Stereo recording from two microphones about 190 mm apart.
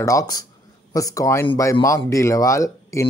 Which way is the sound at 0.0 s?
20° left (ahead or behind).